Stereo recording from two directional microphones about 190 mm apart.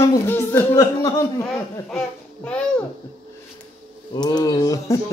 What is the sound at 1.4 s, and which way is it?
A child's voice, 5° left (ahead or behind).